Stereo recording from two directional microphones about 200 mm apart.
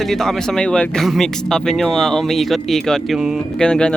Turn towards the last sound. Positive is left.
turn(degrees=5)  # may be behind; listen again after turning